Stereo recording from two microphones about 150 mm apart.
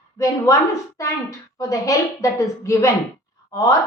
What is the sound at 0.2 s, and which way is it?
A woman's voice, 20° left (ahead or behind).